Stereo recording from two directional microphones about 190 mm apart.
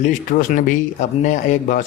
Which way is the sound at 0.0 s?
45° left (ahead or behind).